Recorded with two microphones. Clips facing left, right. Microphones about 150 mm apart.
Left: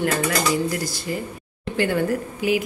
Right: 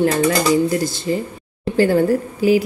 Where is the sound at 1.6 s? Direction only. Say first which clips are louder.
Right 7 dB; 35° right (ahead or behind).